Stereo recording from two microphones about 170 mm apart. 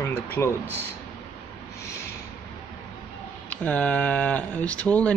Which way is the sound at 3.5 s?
10° left (ahead or behind).